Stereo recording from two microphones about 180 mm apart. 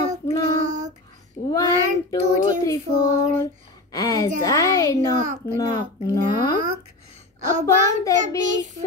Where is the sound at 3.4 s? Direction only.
20° left (ahead or behind).